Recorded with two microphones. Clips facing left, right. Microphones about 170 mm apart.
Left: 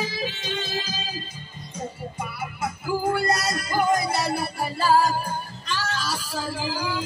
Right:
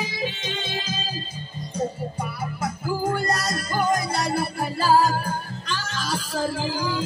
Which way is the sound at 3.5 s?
45° right (ahead or behind).